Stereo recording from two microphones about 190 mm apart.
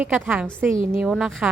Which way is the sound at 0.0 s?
10° right (ahead or behind).